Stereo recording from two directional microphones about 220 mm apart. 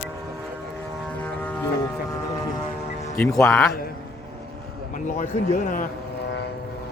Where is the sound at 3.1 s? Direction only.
5° left (ahead or behind).